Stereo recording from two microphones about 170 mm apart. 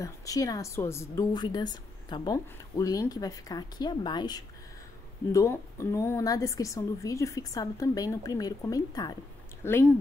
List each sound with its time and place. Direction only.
0.0 s a woman's voice: 20° left (ahead or behind)